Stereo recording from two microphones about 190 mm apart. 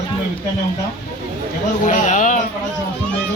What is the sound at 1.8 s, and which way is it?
Speech, 40° left (ahead or behind).